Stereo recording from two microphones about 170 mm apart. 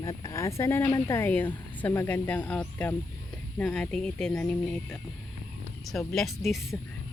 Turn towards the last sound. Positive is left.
turn(degrees=0)  # may be behind; listen again after turning